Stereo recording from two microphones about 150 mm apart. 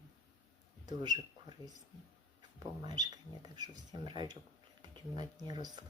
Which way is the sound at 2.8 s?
25° right (ahead or behind).